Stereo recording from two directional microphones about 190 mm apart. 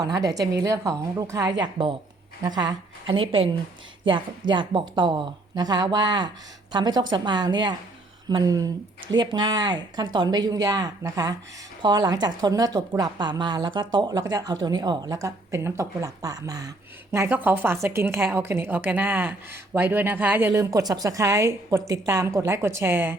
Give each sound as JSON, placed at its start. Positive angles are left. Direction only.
{"t": 0.0, "sound": "a woman's voice", "side_deg": -20}